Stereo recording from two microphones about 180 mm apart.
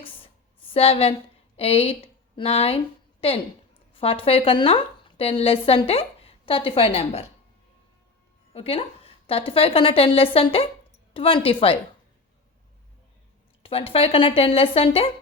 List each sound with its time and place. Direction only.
0.0 s a sound: 30° left (ahead or behind)
1.5 s a woman's voice: 35° left (ahead or behind)
8.5 s a woman's voice: 35° left (ahead or behind)
13.6 s speech: 30° left (ahead or behind)